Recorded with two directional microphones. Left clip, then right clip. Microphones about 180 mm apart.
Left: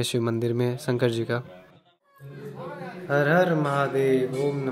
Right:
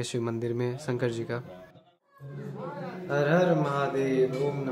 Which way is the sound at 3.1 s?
45° left (ahead or behind).